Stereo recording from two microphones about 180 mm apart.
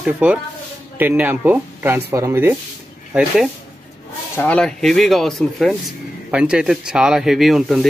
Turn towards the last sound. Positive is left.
turn(degrees=0)  # may be behind; listen again after turning